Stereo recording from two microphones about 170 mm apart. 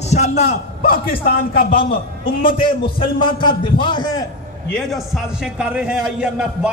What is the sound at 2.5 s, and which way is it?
A man's voice, 30° left (ahead or behind).